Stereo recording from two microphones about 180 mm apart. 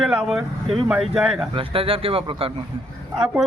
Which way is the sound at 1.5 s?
30° right (ahead or behind).